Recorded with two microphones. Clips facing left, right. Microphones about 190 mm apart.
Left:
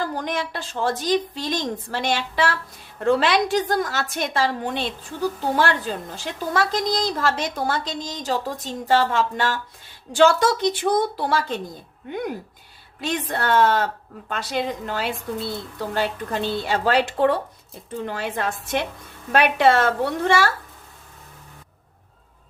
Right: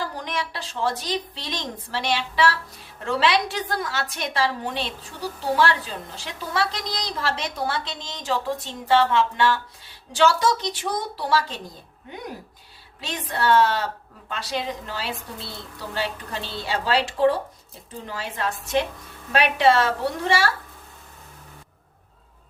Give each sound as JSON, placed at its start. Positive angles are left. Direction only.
{"t": 0.2, "sound": "a woman's voice", "side_deg": 50}
{"t": 13.0, "sound": "a woman's voice", "side_deg": 50}